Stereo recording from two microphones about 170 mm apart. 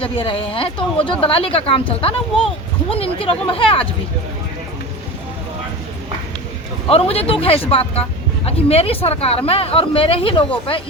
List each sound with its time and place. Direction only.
0.0 s speech: 30° left (ahead or behind)
6.8 s speech: 35° left (ahead or behind)